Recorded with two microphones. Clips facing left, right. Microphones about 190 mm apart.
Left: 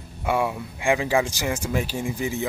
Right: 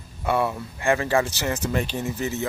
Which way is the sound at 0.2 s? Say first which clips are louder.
Even; 10° left (ahead or behind).